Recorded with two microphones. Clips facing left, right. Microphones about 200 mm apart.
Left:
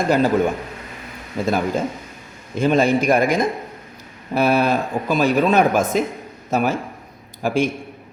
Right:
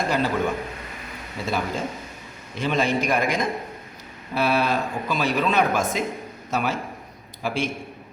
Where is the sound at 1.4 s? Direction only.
45° left (ahead or behind).